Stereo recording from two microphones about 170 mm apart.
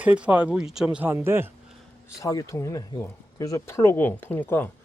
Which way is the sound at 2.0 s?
20° left (ahead or behind).